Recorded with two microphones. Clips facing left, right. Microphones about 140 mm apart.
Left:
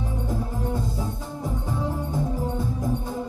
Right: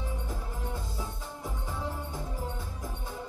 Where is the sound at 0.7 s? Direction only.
40° left (ahead or behind).